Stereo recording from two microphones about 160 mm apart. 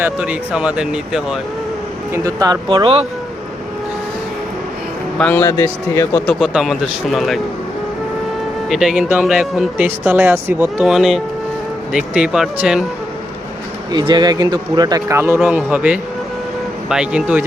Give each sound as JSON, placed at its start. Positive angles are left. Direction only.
{"t": 0.0, "sound": "speech", "side_deg": -5}
{"t": 2.1, "sound": "speech", "side_deg": -20}
{"t": 5.1, "sound": "a man's voice", "side_deg": 10}
{"t": 6.2, "sound": "speech", "side_deg": 0}
{"t": 8.7, "sound": "speech", "side_deg": -5}
{"t": 13.9, "sound": "speech", "side_deg": -25}